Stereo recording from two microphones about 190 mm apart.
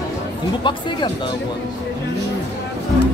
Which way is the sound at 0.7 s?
25° left (ahead or behind).